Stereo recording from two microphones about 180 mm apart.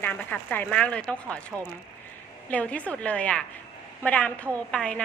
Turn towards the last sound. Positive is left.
turn(degrees=5)  # may be behind; listen again after turning